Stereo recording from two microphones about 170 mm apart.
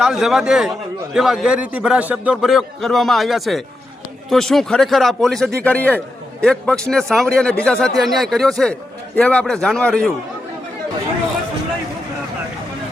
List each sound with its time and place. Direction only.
0.0 s a man's voice: centre (ahead or behind)